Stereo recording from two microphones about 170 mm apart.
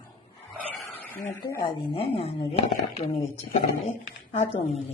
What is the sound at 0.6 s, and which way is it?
Dog, 5° left (ahead or behind).